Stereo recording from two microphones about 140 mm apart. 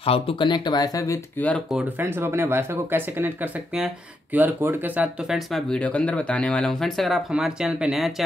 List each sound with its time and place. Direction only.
0.0 s speech: 40° left (ahead or behind); by 1.2 s 25° left (ahead or behind)
2.0 s speech: 15° right (ahead or behind)
5.5 s speech: 5° left (ahead or behind)